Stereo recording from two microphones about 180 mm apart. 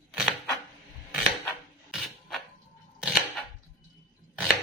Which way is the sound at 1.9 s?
Centre (ahead or behind).